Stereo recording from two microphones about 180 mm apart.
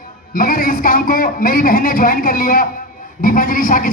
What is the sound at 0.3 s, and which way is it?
A man's voice, 50° left (ahead or behind).